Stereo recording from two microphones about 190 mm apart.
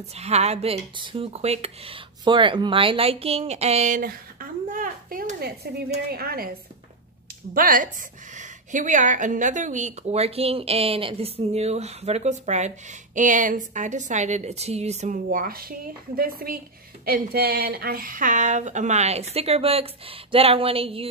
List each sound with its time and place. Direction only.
0.1 s a woman's voice: 35° right (ahead or behind); by 6.5 s 50° right (ahead or behind)
7.5 s a woman's voice: 45° right (ahead or behind)
15.2 s a woman's voice: 50° right (ahead or behind); by 21.1 s 30° right (ahead or behind)